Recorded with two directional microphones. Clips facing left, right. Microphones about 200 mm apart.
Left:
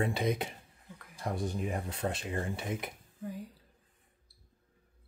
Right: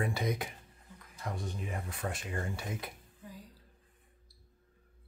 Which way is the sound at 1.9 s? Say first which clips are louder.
Left 4 dB; 25° left (ahead or behind).